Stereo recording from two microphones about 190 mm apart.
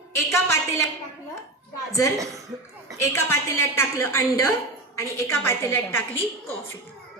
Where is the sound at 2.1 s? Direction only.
15° right (ahead or behind).